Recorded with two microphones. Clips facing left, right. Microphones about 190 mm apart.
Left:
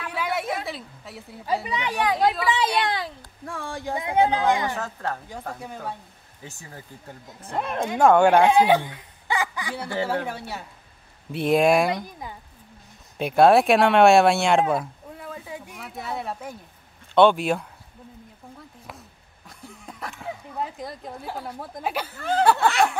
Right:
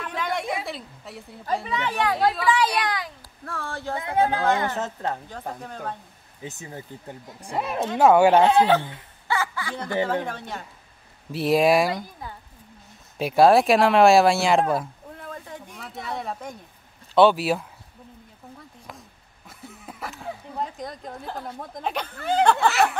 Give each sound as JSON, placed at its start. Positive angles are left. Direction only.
{"t": 0.0, "sound": "a sound", "side_deg": 5}
{"t": 1.8, "sound": "speech", "side_deg": 15}
{"t": 2.5, "sound": "speech", "side_deg": 25}
{"t": 3.4, "sound": "speech", "side_deg": 15}
{"t": 4.7, "sound": "a woman's voice", "side_deg": -20}
{"t": 5.6, "sound": "speech", "side_deg": 10}
{"t": 6.4, "sound": "speech", "side_deg": -20}
{"t": 8.4, "sound": "speech", "side_deg": 10}
{"t": 11.9, "sound": "speech", "side_deg": 15}
{"t": 13.2, "sound": "speech", "side_deg": 0}
{"t": 18.9, "sound": "a sound", "side_deg": 0}
{"t": 22.4, "sound": "speech", "side_deg": 5}